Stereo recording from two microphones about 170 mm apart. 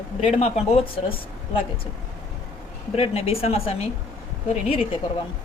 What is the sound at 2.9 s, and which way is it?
Speech, 35° left (ahead or behind).